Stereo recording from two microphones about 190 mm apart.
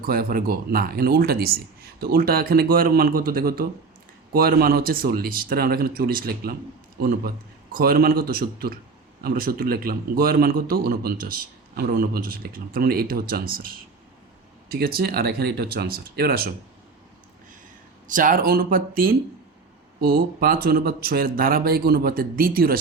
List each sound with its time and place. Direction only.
0.0 s a man's voice: 50° right (ahead or behind)
18.1 s a man's voice: 45° right (ahead or behind)